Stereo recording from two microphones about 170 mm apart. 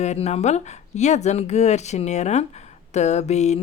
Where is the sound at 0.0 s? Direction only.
40° left (ahead or behind).